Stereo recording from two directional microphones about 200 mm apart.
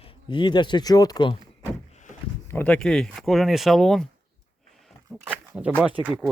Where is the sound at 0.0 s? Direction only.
25° left (ahead or behind).